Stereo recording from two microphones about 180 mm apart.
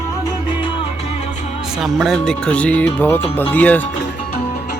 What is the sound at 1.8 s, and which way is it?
Speech, centre (ahead or behind).